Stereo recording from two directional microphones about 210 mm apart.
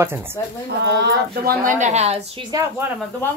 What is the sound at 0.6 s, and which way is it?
A woman's voice, 55° right (ahead or behind).